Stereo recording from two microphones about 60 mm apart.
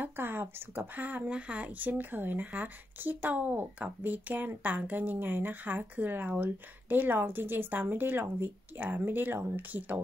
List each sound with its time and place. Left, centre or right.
0.0 s a woman's voice: right